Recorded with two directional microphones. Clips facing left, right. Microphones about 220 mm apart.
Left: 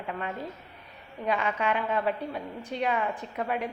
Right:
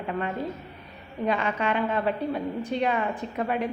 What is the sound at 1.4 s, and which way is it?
A woman's voice, 5° left (ahead or behind).